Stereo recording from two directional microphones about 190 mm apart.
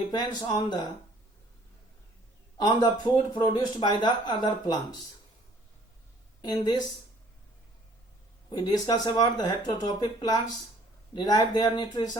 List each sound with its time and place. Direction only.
0.2 s speech: 20° left (ahead or behind)
2.6 s speech: 20° left (ahead or behind)
6.4 s speech: 20° left (ahead or behind)
8.4 s speech: 20° left (ahead or behind)